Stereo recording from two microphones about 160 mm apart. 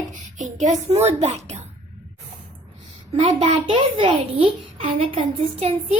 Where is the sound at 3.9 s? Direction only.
30° right (ahead or behind).